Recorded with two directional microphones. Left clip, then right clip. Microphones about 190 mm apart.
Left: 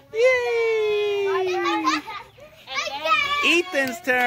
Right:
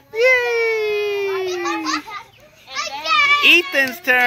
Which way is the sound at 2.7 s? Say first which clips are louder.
Right 2 dB; 35° left (ahead or behind).